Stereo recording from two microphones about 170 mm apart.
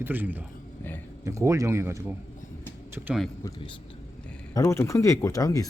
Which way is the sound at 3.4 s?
15° left (ahead or behind).